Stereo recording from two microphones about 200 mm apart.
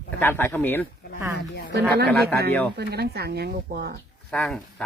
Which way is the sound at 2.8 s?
50° right (ahead or behind).